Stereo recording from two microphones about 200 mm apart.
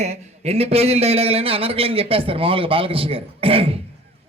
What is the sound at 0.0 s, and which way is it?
A man's voice, 30° right (ahead or behind).